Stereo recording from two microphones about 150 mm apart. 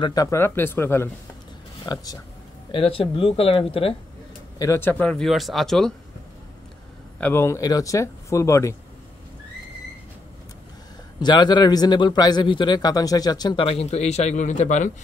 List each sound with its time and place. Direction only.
0.0 s speech: 25° left (ahead or behind)
1.9 s a man's voice: 25° left (ahead or behind)
2.7 s speech: 40° left (ahead or behind)
4.6 s speech: 15° left (ahead or behind)
7.2 s a man's voice: 15° left (ahead or behind)
11.1 s a man's voice: 30° left (ahead or behind); by 14.9 s 50° left (ahead or behind)